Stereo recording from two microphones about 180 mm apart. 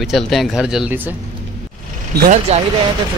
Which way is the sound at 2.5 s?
35° right (ahead or behind).